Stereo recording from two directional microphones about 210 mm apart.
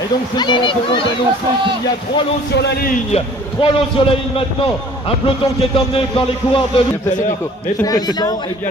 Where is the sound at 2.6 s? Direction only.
50° left (ahead or behind).